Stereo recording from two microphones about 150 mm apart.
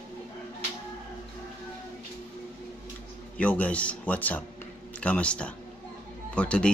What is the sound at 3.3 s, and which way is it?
Speech, 10° left (ahead or behind).